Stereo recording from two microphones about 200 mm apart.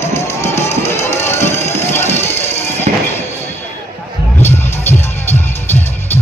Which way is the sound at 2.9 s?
40° right (ahead or behind).